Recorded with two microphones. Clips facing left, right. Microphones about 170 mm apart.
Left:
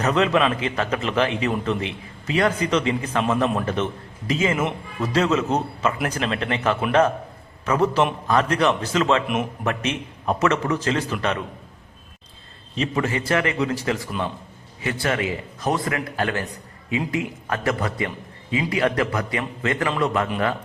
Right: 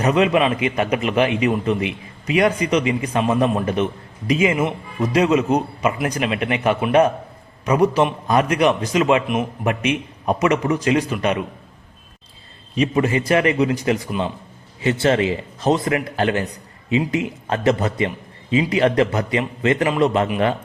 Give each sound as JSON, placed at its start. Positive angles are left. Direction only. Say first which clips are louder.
{"t": 0.0, "sound": "a man's voice", "louder": "right 3 dB", "side_deg": -15}
{"t": 9.2, "sound": "a man's voice", "louder": "right 2 dB", "side_deg": 0}
{"t": 9.6, "sound": "a man's voice", "louder": "right 4 dB", "side_deg": -15}
{"t": 12.7, "sound": "a man's voice", "louder": "right 5 dB", "side_deg": -15}